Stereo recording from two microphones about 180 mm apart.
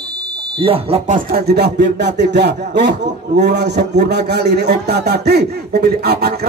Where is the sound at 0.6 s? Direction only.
30° right (ahead or behind).